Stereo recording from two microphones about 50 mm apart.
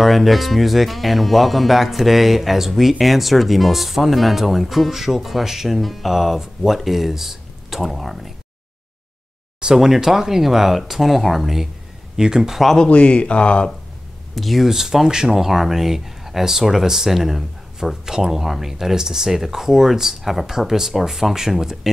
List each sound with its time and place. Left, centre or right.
0.0 s speech: centre
9.8 s speech: centre
12.7 s speech: left
14.3 s speech: centre